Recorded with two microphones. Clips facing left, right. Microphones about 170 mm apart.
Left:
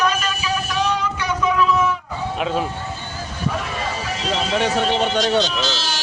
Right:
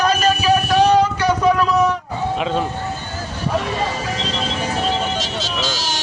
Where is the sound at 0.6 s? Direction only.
60° right (ahead or behind).